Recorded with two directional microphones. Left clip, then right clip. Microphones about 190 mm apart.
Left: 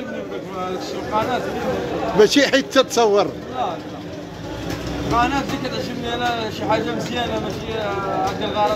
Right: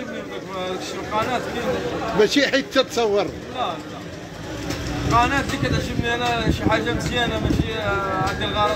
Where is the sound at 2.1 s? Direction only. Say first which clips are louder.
Left 4 dB; 10° left (ahead or behind).